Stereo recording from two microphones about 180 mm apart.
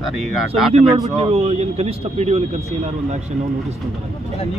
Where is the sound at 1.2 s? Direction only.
35° right (ahead or behind).